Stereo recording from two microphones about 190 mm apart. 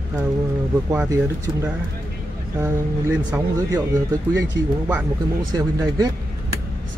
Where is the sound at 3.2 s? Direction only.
20° right (ahead or behind).